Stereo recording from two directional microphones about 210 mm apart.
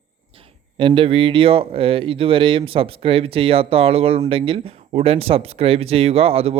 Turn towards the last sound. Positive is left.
turn(degrees=-25)  # may be behind; listen again after turning